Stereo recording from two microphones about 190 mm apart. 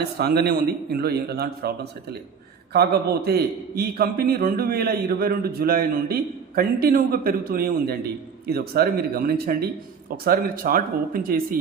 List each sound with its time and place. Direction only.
0.0 s a man's voice: 55° right (ahead or behind)